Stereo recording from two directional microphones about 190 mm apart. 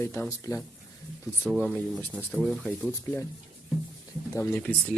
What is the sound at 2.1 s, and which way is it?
Speech, 5° right (ahead or behind).